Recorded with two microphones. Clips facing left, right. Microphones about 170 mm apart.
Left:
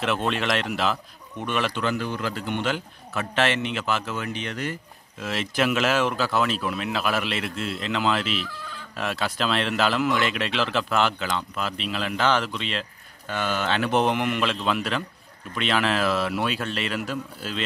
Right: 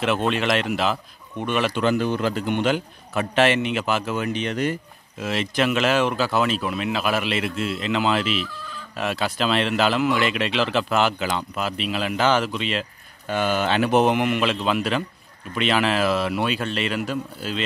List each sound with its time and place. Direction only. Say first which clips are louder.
0.0 s speech: right 3 dB; centre (ahead or behind)
1.8 s a man's voice: right 6 dB; 20° right (ahead or behind)
5.2 s a man's voice: right 2 dB; centre (ahead or behind)